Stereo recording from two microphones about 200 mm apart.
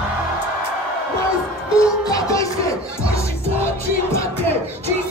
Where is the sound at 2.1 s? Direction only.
15° left (ahead or behind).